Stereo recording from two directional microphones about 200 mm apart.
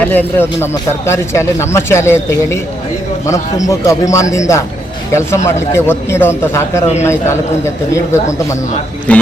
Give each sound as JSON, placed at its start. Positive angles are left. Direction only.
{"t": 0.0, "sound": "speech", "side_deg": 10}